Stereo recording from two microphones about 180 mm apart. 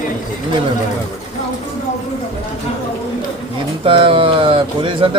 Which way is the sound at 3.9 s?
30° right (ahead or behind).